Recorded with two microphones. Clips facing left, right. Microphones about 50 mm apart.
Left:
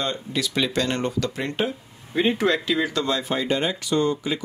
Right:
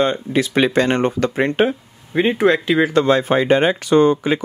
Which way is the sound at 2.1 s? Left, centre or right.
Right.